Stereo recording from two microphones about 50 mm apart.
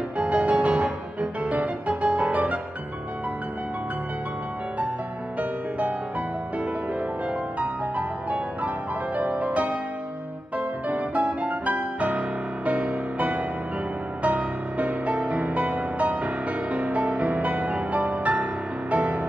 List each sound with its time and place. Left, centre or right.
0.2 s music: right
5.4 s music: right
7.5 s music: right
10.9 s music: right